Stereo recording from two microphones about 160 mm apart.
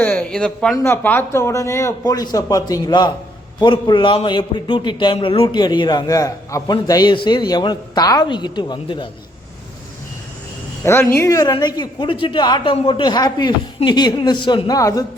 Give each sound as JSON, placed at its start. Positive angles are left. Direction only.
{"t": 0.0, "sound": "a man's voice", "side_deg": 10}
{"t": 11.1, "sound": "a man's voice", "side_deg": 20}